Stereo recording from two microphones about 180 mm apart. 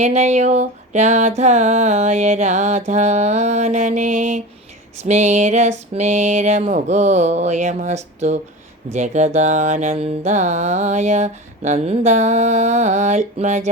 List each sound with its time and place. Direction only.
0.0 s mantra: 40° right (ahead or behind)